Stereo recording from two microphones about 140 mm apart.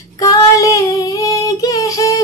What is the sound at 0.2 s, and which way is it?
Female singing, 25° left (ahead or behind).